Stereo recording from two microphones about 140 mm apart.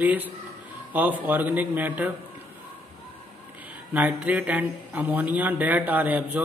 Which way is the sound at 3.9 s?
10° right (ahead or behind).